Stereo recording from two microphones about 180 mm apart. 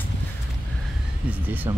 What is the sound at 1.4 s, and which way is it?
Speech, 10° right (ahead or behind).